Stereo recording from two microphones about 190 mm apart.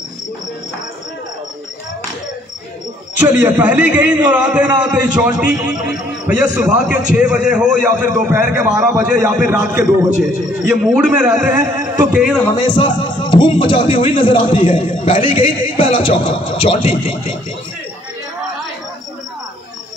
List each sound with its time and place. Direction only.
3.2 s a man's voice: 10° right (ahead or behind)
10.9 s a man's voice: 5° right (ahead or behind)
11.6 s a sound: 20° right (ahead or behind)
12.1 s a man's voice: 5° right (ahead or behind)
12.5 s a man's voice: 25° left (ahead or behind)